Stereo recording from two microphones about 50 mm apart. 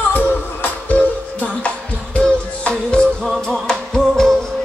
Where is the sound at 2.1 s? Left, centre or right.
Left.